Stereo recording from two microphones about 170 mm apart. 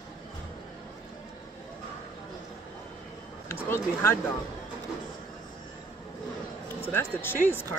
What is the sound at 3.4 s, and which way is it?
Speech, 15° left (ahead or behind).